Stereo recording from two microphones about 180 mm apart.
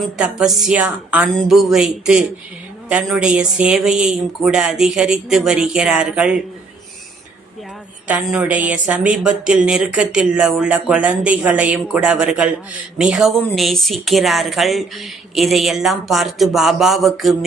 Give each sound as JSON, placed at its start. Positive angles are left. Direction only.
{"t": 0.2, "sound": "speech", "side_deg": -5}
{"t": 8.0, "sound": "speech", "side_deg": -5}